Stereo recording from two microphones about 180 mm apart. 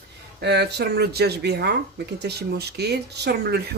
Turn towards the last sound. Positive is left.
turn(degrees=-60)  # may be behind; listen again after turning